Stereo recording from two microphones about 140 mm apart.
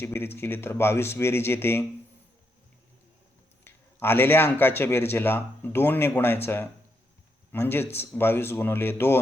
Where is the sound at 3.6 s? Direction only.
15° left (ahead or behind).